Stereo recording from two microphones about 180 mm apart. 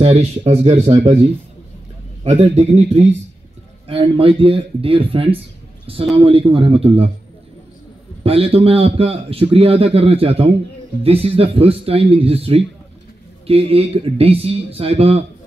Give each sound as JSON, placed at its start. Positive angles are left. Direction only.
{"t": 0.0, "sound": "a man's voice", "side_deg": -35}
{"t": 2.2, "sound": "a man's voice", "side_deg": -40}
{"t": 8.2, "sound": "a man's voice", "side_deg": -30}